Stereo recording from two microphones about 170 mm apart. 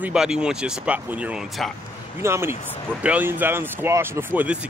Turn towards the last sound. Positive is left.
turn(degrees=-10)  # may be behind; listen again after turning